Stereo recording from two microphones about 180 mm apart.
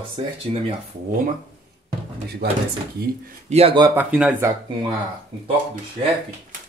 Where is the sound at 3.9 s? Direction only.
10° right (ahead or behind).